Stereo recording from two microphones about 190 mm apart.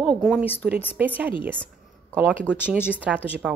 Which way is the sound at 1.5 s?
5° left (ahead or behind).